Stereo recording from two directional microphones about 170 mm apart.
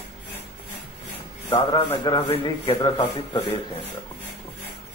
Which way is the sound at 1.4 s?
20° left (ahead or behind).